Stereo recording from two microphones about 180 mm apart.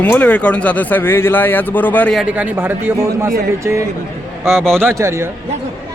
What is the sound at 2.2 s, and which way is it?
A man's voice, 10° right (ahead or behind).